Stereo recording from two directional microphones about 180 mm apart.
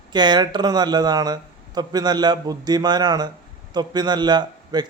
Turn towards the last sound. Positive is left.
turn(degrees=-25)  # may be behind; listen again after turning